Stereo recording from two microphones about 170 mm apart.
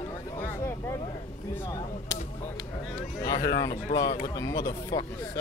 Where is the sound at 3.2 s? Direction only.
20° left (ahead or behind).